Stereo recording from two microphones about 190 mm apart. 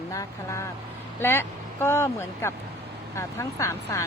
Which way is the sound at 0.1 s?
15° left (ahead or behind).